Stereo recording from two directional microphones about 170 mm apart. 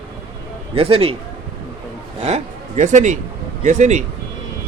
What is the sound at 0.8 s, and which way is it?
Speech, 35° right (ahead or behind).